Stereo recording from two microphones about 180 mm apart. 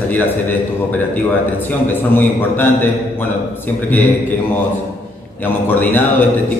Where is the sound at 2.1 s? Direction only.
10° left (ahead or behind).